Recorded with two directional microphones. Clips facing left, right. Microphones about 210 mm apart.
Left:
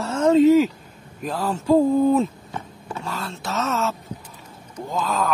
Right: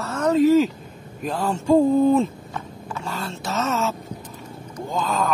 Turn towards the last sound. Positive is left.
turn(degrees=0)  # may be behind; listen again after turning